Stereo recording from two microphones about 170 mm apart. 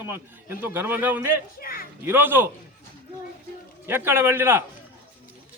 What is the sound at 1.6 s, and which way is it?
Speech, 60° left (ahead or behind).